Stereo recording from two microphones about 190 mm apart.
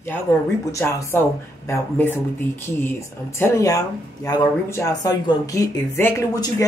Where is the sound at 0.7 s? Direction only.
15° left (ahead or behind).